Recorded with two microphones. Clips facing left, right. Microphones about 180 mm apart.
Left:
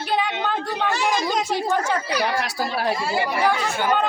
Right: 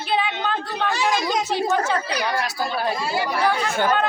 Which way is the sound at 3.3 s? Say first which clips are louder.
Even; 15° left (ahead or behind).